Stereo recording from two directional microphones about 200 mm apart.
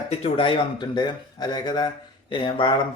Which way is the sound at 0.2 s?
25° left (ahead or behind).